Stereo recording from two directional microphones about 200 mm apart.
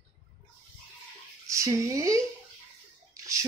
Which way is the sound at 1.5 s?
15° right (ahead or behind).